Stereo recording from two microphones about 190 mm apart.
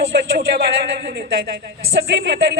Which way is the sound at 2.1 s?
65° right (ahead or behind).